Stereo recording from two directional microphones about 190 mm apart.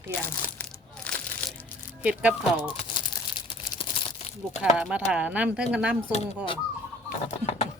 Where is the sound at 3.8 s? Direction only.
35° left (ahead or behind).